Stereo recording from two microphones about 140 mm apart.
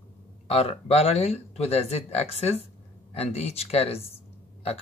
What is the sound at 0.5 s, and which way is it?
Speech, 45° left (ahead or behind).